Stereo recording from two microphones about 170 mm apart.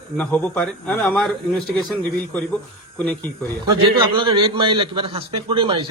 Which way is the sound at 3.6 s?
30° right (ahead or behind).